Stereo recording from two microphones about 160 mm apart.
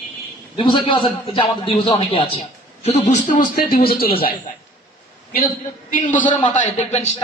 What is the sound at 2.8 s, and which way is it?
A man's voice, 45° left (ahead or behind).